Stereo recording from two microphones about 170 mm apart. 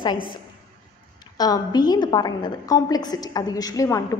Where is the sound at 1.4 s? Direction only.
25° left (ahead or behind).